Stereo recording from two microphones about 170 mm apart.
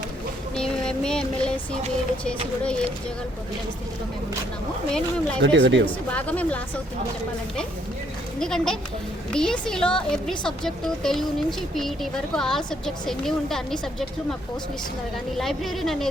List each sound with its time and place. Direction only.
0.5 s a sound: 5° left (ahead or behind)
4.9 s a woman's voice: 5° left (ahead or behind)
5.4 s speech: 90° right
6.1 s a woman's voice: 10° left (ahead or behind)
8.4 s a woman's voice: 5° left (ahead or behind)
15.4 s a woman's voice: centre (ahead or behind)